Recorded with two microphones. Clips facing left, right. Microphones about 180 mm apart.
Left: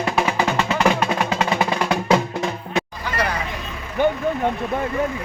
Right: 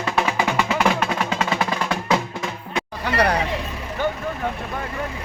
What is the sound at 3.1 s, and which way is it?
Vehicle, 65° right (ahead or behind).